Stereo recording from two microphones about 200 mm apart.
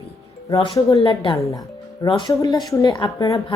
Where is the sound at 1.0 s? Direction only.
25° left (ahead or behind).